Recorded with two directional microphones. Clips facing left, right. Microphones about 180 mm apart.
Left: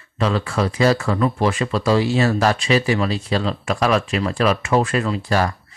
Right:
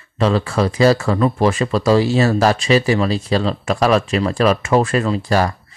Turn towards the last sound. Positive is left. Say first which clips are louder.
# right 3 dB
turn(degrees=-35)  # may be behind; listen again after turning